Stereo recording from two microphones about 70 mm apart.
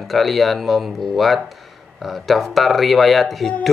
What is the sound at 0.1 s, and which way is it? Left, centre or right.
Speech, centre.